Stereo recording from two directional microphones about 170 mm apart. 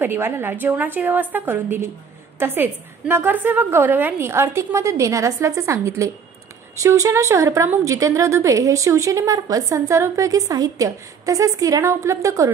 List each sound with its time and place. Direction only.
0.0 s a woman's voice: 15° right (ahead or behind)